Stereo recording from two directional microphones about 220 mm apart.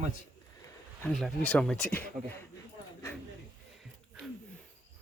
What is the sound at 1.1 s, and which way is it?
Speech, 5° left (ahead or behind).